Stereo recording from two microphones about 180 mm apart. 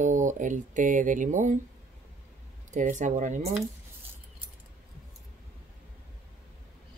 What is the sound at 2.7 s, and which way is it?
Speech, 45° right (ahead or behind).